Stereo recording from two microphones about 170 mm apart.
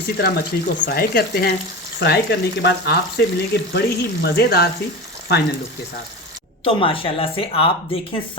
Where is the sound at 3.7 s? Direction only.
65° left (ahead or behind).